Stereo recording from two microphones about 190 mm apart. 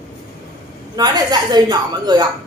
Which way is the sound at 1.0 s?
20° right (ahead or behind).